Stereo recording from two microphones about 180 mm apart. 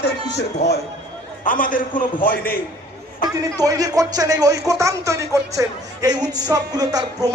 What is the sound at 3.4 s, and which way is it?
Speech, 20° right (ahead or behind).